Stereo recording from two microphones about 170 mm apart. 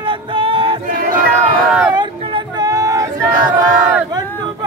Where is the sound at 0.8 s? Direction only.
55° right (ahead or behind).